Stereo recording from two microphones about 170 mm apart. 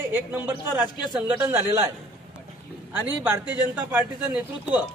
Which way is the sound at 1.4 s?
15° right (ahead or behind).